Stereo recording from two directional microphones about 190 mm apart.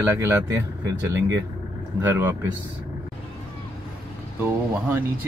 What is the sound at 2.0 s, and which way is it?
Speech, 10° right (ahead or behind).